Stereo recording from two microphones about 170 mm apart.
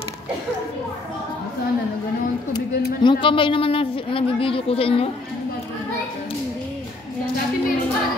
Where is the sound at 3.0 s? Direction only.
30° left (ahead or behind).